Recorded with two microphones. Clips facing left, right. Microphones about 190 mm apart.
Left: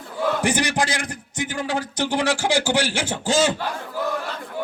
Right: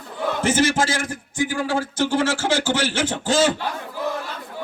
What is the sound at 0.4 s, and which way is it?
A man's voice, 15° left (ahead or behind).